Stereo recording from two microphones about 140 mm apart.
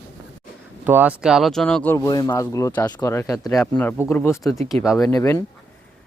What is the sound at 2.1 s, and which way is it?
Speech, 25° left (ahead or behind).